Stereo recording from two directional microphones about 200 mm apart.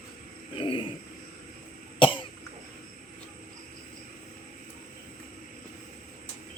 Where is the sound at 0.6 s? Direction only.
25° left (ahead or behind).